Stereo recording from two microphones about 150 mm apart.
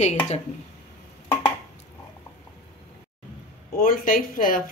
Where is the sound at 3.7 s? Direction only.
70° left (ahead or behind).